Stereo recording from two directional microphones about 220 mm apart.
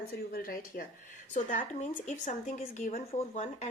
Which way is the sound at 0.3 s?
40° left (ahead or behind).